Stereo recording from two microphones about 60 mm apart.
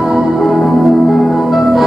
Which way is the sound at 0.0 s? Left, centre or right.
Centre.